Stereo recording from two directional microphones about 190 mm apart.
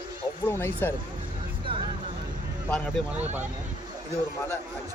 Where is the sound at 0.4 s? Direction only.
10° left (ahead or behind).